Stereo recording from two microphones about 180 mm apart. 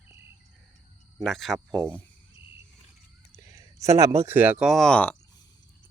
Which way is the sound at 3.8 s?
15° right (ahead or behind).